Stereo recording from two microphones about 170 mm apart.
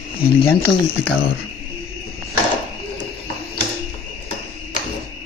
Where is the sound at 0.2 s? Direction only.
60° left (ahead or behind).